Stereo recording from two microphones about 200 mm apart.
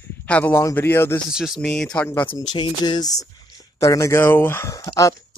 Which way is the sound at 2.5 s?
25° left (ahead or behind).